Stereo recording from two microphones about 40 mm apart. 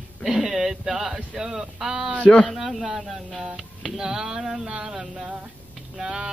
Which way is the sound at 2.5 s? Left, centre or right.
Centre.